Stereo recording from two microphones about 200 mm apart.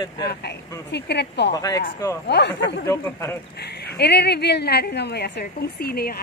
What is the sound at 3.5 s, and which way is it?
A woman's voice, 55° left (ahead or behind).